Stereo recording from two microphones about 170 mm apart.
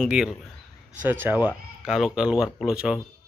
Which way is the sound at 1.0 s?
10° right (ahead or behind).